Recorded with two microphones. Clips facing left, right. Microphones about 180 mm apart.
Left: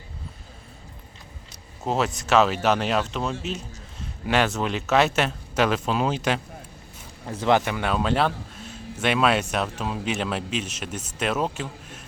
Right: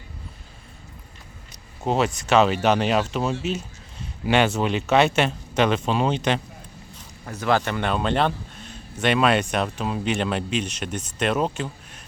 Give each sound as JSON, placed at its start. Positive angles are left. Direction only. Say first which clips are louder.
{"t": 1.8, "sound": "speech", "louder": "right 2 dB", "side_deg": 0}
{"t": 7.3, "sound": "speech", "louder": "left 1 dB", "side_deg": 25}
{"t": 7.6, "sound": "speech", "louder": "right 1 dB", "side_deg": 5}